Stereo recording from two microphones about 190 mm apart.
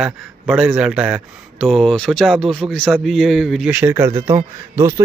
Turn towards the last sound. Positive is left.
turn(degrees=-15)  # may be behind; listen again after turning